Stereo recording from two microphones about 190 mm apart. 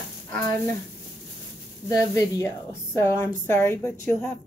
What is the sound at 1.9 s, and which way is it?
Speech, 15° left (ahead or behind).